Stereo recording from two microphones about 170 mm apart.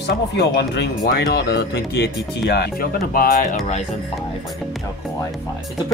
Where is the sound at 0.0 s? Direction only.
90° left; by 3.6 s 55° left (ahead or behind).